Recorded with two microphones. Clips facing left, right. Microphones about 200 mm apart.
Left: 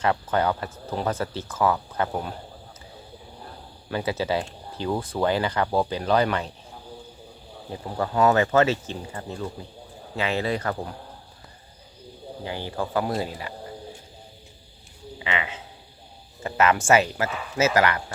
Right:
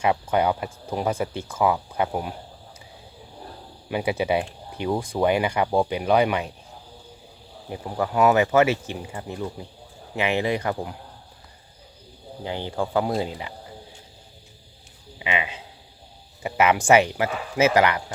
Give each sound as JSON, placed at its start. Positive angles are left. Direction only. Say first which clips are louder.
{"t": 0.0, "sound": "speech", "louder": "right 2 dB", "side_deg": -15}
{"t": 3.8, "sound": "speech", "louder": "right 2 dB", "side_deg": -15}
{"t": 7.7, "sound": "speech", "louder": "right 1 dB", "side_deg": -10}
{"t": 12.5, "sound": "speech", "louder": "right 3 dB", "side_deg": -20}
{"t": 15.2, "sound": "speech", "louder": "right 2 dB", "side_deg": -15}